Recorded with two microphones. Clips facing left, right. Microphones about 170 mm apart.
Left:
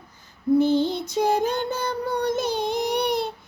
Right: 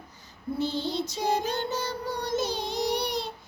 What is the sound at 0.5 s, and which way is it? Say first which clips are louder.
Child singing: left 9 dB; 55° left (ahead or behind).